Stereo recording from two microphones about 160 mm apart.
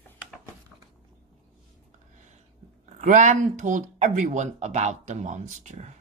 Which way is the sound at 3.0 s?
50° right (ahead or behind).